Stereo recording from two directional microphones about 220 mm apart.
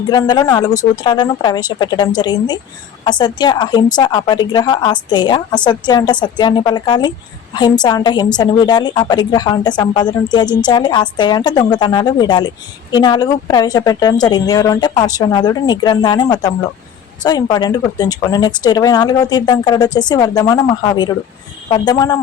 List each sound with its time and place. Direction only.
0.1 s a woman's voice: 20° left (ahead or behind)